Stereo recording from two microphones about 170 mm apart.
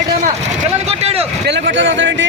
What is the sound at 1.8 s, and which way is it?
Speech, 90° right.